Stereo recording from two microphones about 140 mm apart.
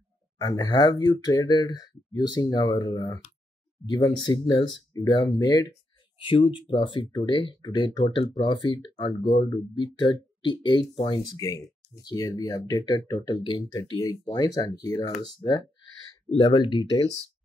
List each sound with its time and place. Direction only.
0.4 s speech: 30° left (ahead or behind)
6.2 s speech: 40° left (ahead or behind)
16.3 s speech: 35° left (ahead or behind)